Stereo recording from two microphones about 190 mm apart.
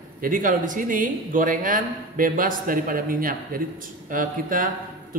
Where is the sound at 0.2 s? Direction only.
45° right (ahead or behind).